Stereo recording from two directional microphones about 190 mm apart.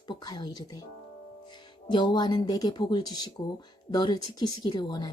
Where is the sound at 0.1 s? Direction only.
25° left (ahead or behind).